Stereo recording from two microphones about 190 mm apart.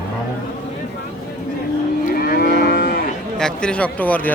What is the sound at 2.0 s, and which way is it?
Moo, 50° left (ahead or behind).